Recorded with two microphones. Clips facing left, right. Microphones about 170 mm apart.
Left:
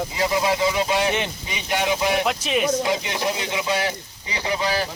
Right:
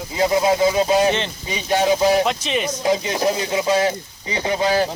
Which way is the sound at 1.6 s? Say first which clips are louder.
Right 6 dB; 30° right (ahead or behind).